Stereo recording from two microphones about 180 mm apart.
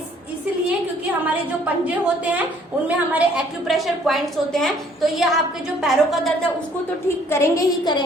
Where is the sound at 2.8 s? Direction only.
5° right (ahead or behind).